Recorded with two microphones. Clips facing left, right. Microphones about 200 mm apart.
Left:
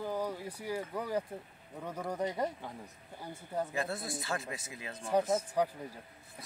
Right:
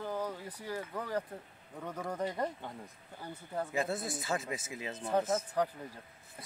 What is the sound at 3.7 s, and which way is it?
Speech, 20° right (ahead or behind).